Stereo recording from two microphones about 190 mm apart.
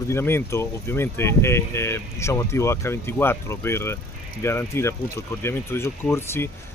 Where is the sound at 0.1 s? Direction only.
15° left (ahead or behind).